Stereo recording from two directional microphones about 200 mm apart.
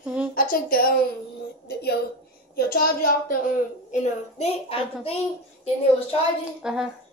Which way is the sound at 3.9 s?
35° left (ahead or behind).